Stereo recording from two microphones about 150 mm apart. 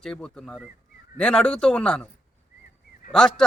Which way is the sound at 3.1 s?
5° left (ahead or behind).